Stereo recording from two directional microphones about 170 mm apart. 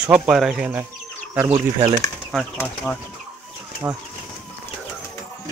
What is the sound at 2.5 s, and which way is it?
Speech, 10° left (ahead or behind).